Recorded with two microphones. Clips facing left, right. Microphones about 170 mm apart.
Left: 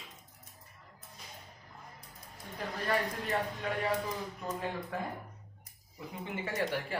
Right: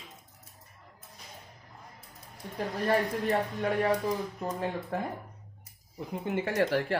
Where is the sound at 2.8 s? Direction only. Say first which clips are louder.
Right 6 dB; 40° right (ahead or behind).